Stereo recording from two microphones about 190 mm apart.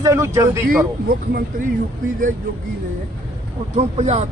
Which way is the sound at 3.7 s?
35° right (ahead or behind).